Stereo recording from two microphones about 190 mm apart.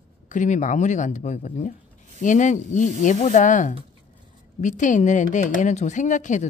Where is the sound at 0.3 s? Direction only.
40° left (ahead or behind).